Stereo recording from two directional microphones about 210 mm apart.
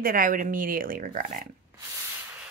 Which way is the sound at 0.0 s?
40° right (ahead or behind).